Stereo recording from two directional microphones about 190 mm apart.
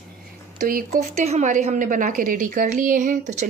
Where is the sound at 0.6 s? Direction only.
50° right (ahead or behind).